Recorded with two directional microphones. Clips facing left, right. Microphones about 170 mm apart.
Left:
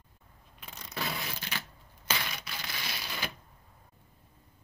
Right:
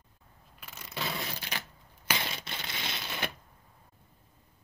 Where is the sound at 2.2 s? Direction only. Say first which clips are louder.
Right 2 dB; 25° right (ahead or behind).